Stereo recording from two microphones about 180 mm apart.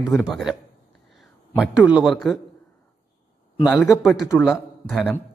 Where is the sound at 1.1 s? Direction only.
5° right (ahead or behind).